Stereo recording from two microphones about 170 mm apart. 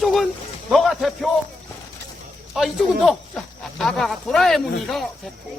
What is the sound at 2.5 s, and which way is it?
Speech, centre (ahead or behind).